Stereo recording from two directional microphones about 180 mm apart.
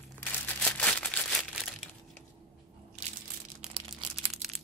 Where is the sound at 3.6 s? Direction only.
30° right (ahead or behind).